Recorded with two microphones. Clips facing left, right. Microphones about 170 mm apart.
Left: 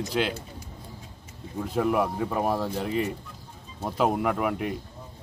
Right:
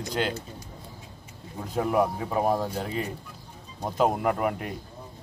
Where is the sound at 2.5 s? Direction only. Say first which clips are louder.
Even; 15° right (ahead or behind).